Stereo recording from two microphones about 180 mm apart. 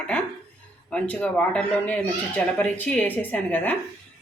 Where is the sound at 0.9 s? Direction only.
5° left (ahead or behind).